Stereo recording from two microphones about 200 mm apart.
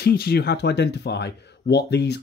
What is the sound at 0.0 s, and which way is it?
Speech, 50° left (ahead or behind).